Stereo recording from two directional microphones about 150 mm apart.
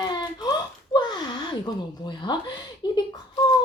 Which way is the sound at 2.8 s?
30° left (ahead or behind).